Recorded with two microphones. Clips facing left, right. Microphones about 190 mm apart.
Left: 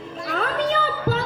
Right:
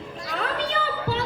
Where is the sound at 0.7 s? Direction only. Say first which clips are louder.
Left 4 dB; 45° left (ahead or behind).